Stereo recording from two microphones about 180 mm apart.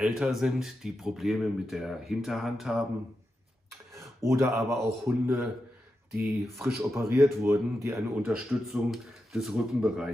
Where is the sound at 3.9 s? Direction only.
15° right (ahead or behind).